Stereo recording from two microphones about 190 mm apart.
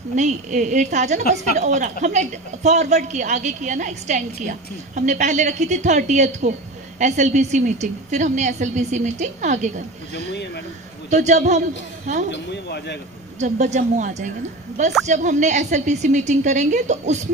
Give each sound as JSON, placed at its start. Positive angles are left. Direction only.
{"t": 0.1, "sound": "a woman's voice", "side_deg": -40}
{"t": 10.1, "sound": "speech", "side_deg": 65}
{"t": 11.1, "sound": "a woman's voice", "side_deg": -40}
{"t": 12.3, "sound": "speech", "side_deg": 60}
{"t": 13.4, "sound": "a woman's voice", "side_deg": -35}